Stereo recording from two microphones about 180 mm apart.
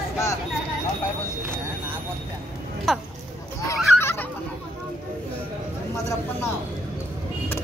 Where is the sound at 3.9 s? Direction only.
10° left (ahead or behind).